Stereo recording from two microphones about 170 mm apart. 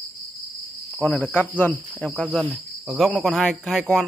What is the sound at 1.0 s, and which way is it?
Cricket, 5° left (ahead or behind).